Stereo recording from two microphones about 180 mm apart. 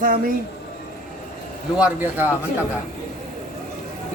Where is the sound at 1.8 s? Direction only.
10° right (ahead or behind).